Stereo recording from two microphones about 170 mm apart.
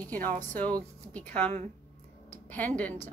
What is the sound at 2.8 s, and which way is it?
Speech, 10° left (ahead or behind).